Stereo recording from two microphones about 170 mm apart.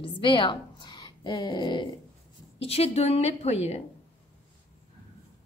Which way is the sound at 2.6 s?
35° left (ahead or behind).